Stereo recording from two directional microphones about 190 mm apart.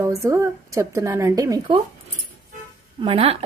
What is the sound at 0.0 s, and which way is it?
A woman's voice, 15° right (ahead or behind).